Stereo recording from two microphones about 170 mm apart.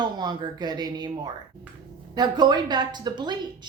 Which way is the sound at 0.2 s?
25° right (ahead or behind).